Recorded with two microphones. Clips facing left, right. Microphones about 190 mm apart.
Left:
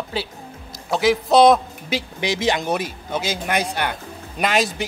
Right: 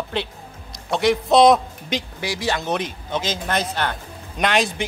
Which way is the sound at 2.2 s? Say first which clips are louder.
Left 5 dB; 20° left (ahead or behind).